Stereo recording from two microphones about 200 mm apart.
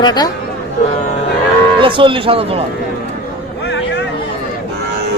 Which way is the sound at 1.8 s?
25° right (ahead or behind).